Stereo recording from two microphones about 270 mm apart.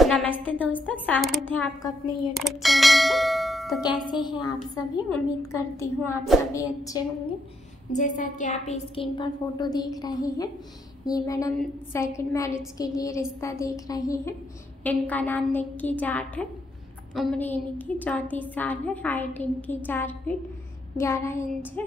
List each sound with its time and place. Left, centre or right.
0.0 s music: centre
1.0 s a woman's voice: centre
2.3 s bell: centre
3.8 s a woman's voice: centre
7.9 s a woman's voice: left; by 21.8 s centre